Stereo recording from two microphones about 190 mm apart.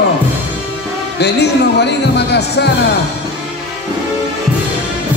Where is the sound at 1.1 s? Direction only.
60° left (ahead or behind).